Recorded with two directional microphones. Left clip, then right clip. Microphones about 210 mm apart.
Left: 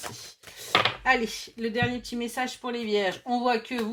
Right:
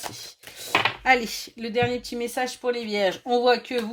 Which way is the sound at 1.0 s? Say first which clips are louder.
Right 3 dB; 45° right (ahead or behind).